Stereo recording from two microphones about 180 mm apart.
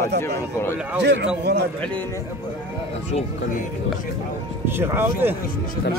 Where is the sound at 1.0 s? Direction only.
75° right (ahead or behind).